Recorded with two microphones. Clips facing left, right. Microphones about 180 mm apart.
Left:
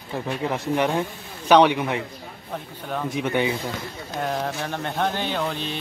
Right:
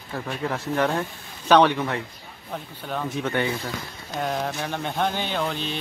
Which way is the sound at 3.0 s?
15° left (ahead or behind).